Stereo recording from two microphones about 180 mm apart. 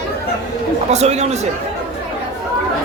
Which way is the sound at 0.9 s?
40° right (ahead or behind).